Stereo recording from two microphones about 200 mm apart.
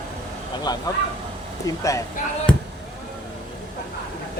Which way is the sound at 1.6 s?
15° left (ahead or behind).